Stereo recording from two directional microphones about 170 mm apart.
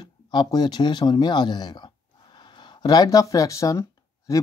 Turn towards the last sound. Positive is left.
turn(degrees=20)  # may be behind; listen again after turning